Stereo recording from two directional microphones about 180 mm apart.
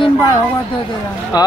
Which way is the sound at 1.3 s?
20° left (ahead or behind).